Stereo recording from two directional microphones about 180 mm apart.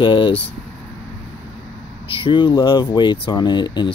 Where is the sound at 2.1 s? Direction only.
25° left (ahead or behind).